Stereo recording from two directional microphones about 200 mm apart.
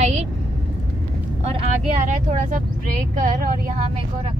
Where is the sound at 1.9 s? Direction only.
40° right (ahead or behind).